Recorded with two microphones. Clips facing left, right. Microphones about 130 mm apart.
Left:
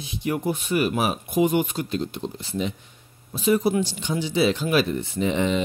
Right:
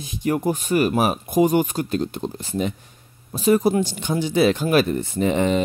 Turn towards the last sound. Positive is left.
turn(degrees=-45)  # may be behind; listen again after turning